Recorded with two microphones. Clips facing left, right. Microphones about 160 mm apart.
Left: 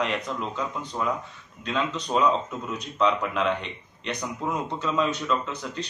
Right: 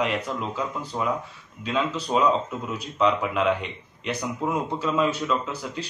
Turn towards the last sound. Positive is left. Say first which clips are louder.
# right 1 dB
turn(degrees=-5)  # may be behind; listen again after turning